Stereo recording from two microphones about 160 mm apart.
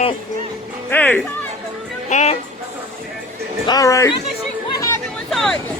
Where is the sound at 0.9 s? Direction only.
10° left (ahead or behind).